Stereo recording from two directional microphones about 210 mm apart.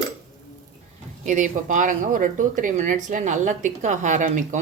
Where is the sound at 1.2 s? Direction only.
35° right (ahead or behind).